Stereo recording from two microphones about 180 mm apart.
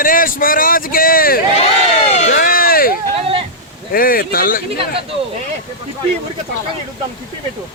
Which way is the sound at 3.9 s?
55° left (ahead or behind).